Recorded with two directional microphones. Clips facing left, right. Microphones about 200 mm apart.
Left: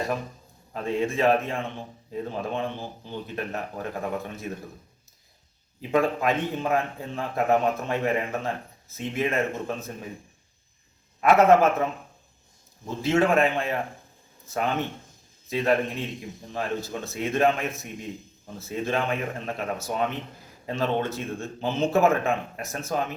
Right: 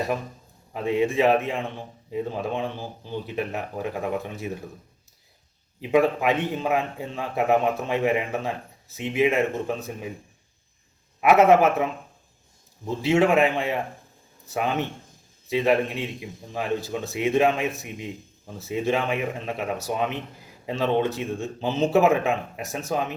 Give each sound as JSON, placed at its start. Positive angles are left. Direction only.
{"t": 0.7, "sound": "a man's voice", "side_deg": -15}
{"t": 5.8, "sound": "a man's voice", "side_deg": -15}
{"t": 11.2, "sound": "a man's voice", "side_deg": -15}
{"t": 15.4, "sound": "a man's voice", "side_deg": -15}